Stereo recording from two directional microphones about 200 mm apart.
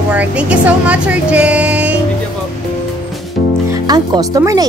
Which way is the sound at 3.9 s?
15° right (ahead or behind).